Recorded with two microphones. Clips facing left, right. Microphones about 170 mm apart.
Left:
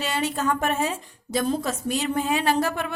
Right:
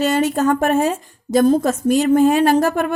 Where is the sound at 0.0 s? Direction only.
45° right (ahead or behind).